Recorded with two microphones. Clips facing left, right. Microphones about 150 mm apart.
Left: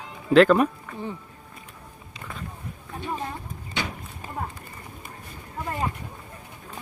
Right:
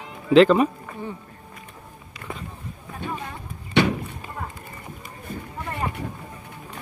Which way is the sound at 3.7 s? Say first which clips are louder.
Right 12 dB; 75° right (ahead or behind).